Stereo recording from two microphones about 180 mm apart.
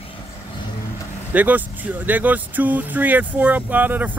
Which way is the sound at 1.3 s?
10° right (ahead or behind).